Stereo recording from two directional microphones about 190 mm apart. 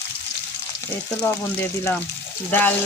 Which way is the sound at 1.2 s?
15° left (ahead or behind).